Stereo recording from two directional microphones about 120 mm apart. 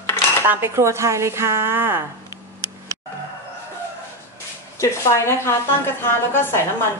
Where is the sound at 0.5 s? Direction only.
20° right (ahead or behind).